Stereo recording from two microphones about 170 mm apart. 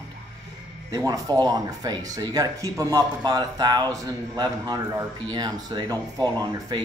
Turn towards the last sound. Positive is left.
turn(degrees=-25)  # may be behind; listen again after turning